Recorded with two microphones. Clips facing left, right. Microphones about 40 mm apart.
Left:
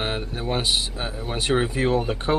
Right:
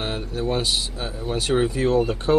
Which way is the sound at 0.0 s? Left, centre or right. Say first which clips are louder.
Right 1 dB; left.